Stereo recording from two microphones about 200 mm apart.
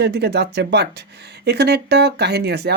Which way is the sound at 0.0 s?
55° right (ahead or behind).